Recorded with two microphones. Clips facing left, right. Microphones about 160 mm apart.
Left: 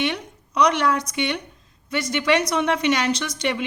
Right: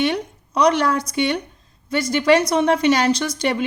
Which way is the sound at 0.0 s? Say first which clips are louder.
Right 5 dB; 35° right (ahead or behind).